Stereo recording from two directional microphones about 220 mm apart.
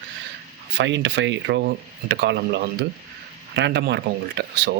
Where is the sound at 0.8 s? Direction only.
55° right (ahead or behind).